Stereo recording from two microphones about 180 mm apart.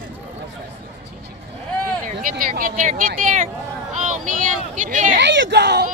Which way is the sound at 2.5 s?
45° right (ahead or behind).